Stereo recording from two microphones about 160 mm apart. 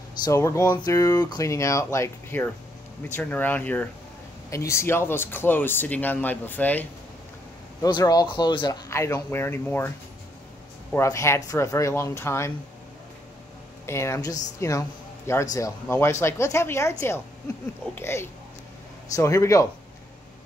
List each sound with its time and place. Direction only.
0.2 s speech: 20° left (ahead or behind)
7.8 s speech: 25° left (ahead or behind)
11.0 s speech: 20° left (ahead or behind)
13.8 s speech: 15° left (ahead or behind)
17.9 s speech: 15° left (ahead or behind)